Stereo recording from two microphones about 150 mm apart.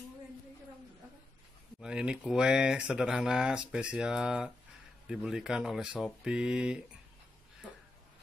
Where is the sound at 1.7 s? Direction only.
5° right (ahead or behind).